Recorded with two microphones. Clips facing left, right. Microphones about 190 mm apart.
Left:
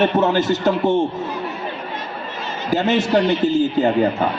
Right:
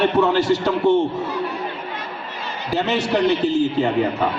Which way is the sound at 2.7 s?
50° left (ahead or behind).